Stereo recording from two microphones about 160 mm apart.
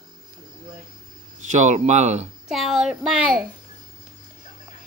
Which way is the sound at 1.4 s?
45° right (ahead or behind).